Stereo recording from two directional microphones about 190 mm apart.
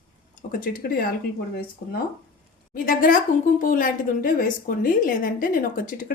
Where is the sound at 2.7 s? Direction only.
50° left (ahead or behind).